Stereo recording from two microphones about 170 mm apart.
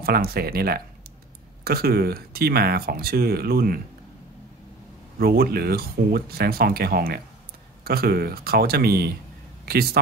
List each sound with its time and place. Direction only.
0.0 s speech: 65° right (ahead or behind)
5.2 s speech: 65° right (ahead or behind)